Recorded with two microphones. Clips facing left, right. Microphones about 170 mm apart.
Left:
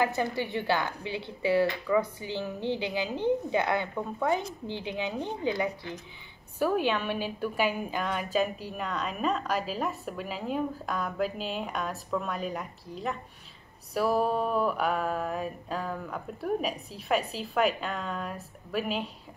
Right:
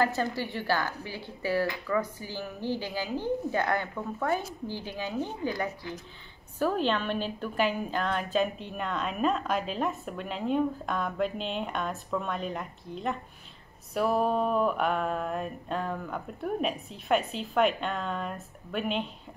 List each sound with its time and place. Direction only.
0.0 s a woman's voice: 15° left (ahead or behind)
6.6 s a woman's voice: 10° left (ahead or behind)